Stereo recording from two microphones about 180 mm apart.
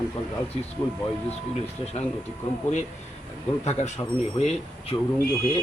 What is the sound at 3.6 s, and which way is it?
A man's voice, 40° left (ahead or behind).